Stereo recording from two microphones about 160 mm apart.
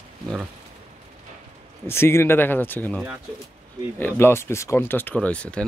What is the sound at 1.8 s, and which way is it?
Speech, 15° left (ahead or behind).